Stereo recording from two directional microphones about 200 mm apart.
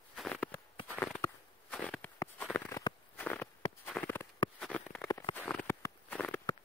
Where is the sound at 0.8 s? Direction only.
5° left (ahead or behind).